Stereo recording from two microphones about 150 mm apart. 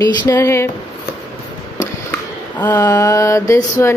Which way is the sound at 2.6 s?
20° left (ahead or behind).